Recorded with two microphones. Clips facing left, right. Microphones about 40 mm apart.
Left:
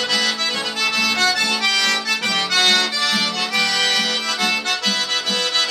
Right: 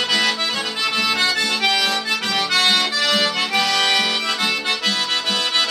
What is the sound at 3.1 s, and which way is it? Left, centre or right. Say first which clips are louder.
Music: right 2 dB; centre.